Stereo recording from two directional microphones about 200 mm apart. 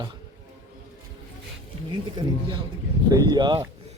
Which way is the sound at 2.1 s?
25° right (ahead or behind).